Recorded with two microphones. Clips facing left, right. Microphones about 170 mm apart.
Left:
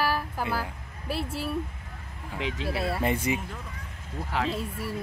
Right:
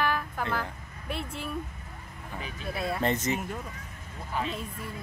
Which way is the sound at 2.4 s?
90° left.